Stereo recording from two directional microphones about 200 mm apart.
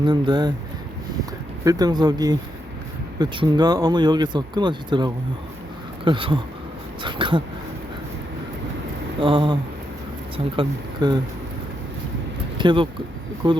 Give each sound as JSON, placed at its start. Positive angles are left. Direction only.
{"t": 0.0, "sound": "speech", "side_deg": -20}
{"t": 1.6, "sound": "speech", "side_deg": -20}
{"t": 9.2, "sound": "speech", "side_deg": -25}
{"t": 12.5, "sound": "speech", "side_deg": -25}